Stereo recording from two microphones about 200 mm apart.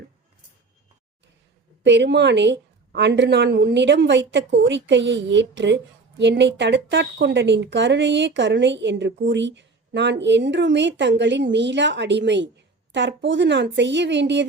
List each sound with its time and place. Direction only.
1.8 s a woman's voice: 60° right (ahead or behind)